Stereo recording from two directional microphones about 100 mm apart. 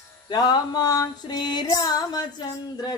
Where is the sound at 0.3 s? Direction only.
45° left (ahead or behind).